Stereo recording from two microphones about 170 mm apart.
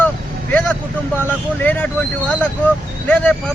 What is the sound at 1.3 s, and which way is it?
Speech, 10° left (ahead or behind).